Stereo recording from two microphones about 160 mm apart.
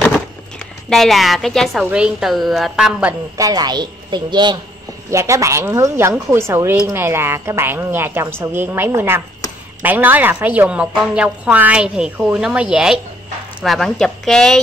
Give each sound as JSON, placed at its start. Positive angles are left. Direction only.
{"t": 0.6, "sound": "a woman's voice", "side_deg": 5}
{"t": 1.8, "sound": "a woman's voice", "side_deg": -5}
{"t": 3.3, "sound": "a woman's voice", "side_deg": -25}